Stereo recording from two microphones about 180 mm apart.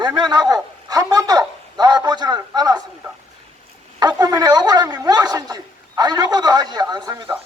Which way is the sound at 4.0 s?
20° right (ahead or behind).